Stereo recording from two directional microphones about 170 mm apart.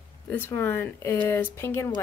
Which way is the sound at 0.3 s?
15° left (ahead or behind).